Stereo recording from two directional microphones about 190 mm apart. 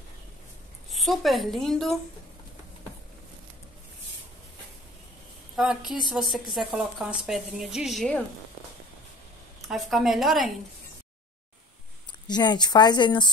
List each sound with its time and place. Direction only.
0.8 s a woman's voice: centre (ahead or behind)
5.6 s a woman's voice: 5° right (ahead or behind)
9.7 s a woman's voice: centre (ahead or behind)
12.3 s speech: 20° left (ahead or behind)